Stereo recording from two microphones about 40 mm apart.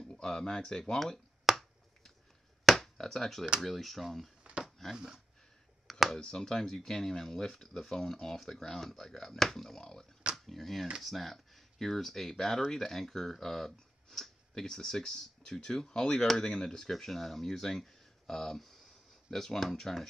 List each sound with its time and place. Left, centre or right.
0.0 s speech: centre
1.5 s finger snapping: centre
2.8 s speech: centre
4.4 s a sound: right
4.6 s a sound: centre
4.9 s speech: centre
5.9 s a sound: centre
6.1 s speech: centre
16.9 s speech: centre